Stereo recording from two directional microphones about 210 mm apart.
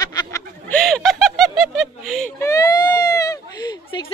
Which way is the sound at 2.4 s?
15° left (ahead or behind).